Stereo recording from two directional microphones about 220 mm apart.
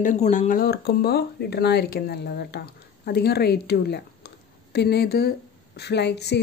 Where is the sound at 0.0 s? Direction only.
35° left (ahead or behind).